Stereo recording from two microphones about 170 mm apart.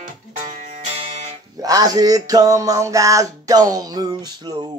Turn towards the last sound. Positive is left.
turn(degrees=-25)  # may be behind; listen again after turning